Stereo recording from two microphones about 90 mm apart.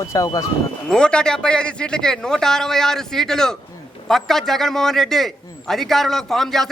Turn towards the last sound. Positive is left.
turn(degrees=5)  # may be behind; listen again after turning